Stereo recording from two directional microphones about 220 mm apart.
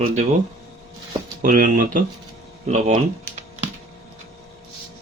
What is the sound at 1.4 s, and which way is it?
Speech, 40° right (ahead or behind).